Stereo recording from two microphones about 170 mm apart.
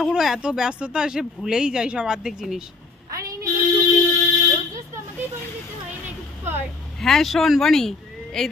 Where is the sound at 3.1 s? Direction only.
20° right (ahead or behind).